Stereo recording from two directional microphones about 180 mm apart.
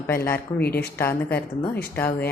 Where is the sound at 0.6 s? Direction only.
60° left (ahead or behind).